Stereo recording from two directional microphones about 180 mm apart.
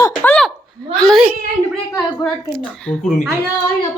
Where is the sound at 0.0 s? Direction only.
10° left (ahead or behind).